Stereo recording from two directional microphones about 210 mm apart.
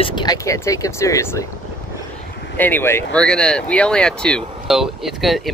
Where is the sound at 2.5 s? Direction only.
10° left (ahead or behind).